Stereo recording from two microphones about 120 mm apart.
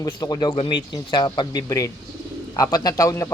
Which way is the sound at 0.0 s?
35° left (ahead or behind).